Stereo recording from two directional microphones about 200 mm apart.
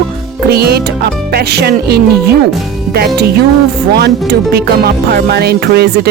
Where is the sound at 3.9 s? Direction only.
50° right (ahead or behind).